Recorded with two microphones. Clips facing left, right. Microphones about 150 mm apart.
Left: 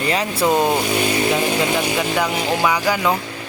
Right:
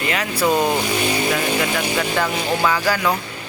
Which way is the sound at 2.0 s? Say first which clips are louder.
Left 1 dB; 15° left (ahead or behind).